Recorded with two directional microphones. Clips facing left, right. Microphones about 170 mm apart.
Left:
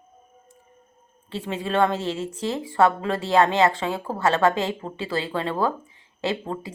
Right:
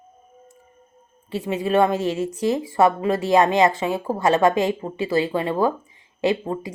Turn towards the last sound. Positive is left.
turn(degrees=-15)  # may be behind; listen again after turning